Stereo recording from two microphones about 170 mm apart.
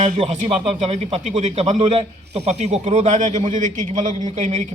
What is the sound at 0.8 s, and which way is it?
A man's voice, 40° right (ahead or behind).